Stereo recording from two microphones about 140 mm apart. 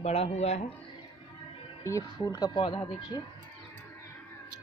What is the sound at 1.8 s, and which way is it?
Speech, 25° left (ahead or behind).